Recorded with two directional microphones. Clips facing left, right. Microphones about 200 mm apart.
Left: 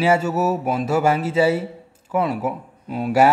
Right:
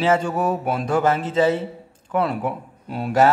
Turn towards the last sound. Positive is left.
turn(degrees=5)  # may be behind; listen again after turning